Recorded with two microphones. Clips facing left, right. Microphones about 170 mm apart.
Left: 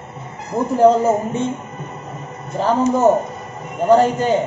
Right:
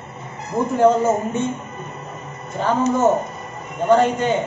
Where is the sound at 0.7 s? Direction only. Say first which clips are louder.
Left 3 dB; 35° left (ahead or behind).